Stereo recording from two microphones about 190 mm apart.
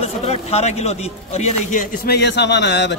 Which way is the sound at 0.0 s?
35° left (ahead or behind).